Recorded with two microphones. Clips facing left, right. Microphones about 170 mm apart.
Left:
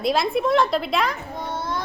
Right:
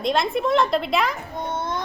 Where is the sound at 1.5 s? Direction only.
20° right (ahead or behind).